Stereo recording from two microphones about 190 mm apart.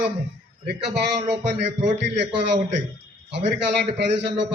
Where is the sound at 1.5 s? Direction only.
65° right (ahead or behind).